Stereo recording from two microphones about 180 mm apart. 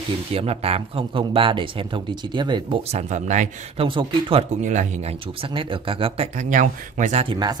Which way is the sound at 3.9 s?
30° right (ahead or behind).